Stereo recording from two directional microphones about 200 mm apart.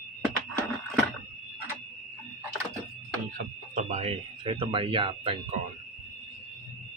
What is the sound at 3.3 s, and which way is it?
Speech, 40° right (ahead or behind).